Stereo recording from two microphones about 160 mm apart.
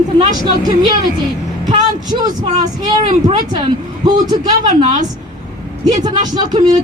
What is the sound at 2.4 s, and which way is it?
Speech, 45° right (ahead or behind).